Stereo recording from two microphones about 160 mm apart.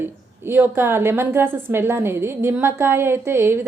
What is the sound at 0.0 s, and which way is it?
A woman's voice, 15° right (ahead or behind).